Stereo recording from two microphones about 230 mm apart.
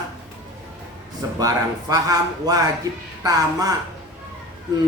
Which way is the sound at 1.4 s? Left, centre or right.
Centre.